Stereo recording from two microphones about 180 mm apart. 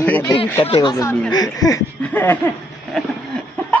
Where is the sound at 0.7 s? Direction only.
25° left (ahead or behind).